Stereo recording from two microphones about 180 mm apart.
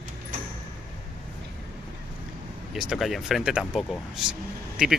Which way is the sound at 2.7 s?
Centre (ahead or behind).